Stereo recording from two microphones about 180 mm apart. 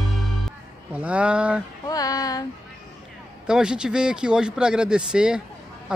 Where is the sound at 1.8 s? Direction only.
20° left (ahead or behind).